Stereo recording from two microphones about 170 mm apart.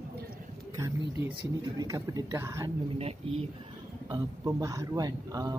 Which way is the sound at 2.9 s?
35° right (ahead or behind).